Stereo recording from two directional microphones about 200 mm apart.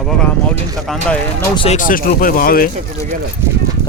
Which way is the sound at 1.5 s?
30° left (ahead or behind).